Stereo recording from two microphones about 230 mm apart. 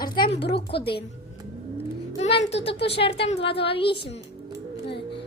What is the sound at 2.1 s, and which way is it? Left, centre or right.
Speech, left.